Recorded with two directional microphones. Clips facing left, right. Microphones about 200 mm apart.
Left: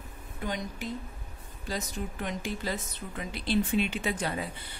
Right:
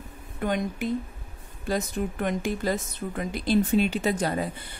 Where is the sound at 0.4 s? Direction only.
55° right (ahead or behind).